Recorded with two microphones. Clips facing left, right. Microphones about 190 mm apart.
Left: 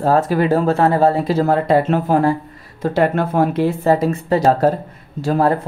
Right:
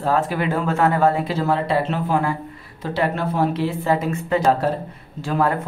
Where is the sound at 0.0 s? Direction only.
40° left (ahead or behind).